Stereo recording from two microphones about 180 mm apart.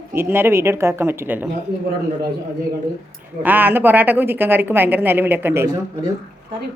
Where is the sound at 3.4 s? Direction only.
10° right (ahead or behind).